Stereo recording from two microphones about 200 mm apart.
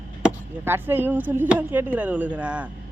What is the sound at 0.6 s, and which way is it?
Speech, 10° right (ahead or behind).